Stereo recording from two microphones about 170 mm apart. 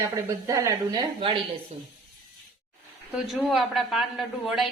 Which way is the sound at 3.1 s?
Centre (ahead or behind).